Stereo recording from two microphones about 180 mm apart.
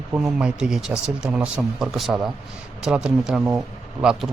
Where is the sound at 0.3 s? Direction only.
5° right (ahead or behind).